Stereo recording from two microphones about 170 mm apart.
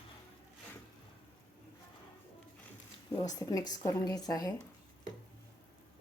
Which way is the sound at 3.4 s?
20° left (ahead or behind).